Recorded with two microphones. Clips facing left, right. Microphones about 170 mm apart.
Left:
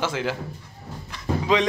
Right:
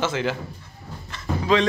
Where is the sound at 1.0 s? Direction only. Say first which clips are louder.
Right 1 dB; 15° left (ahead or behind).